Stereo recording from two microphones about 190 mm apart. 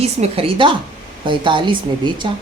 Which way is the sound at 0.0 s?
30° right (ahead or behind).